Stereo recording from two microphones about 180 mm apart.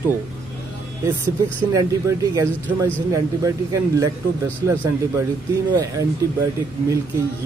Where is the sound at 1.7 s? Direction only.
20° right (ahead or behind).